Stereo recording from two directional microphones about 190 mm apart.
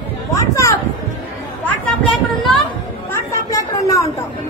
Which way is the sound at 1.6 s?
5° left (ahead or behind).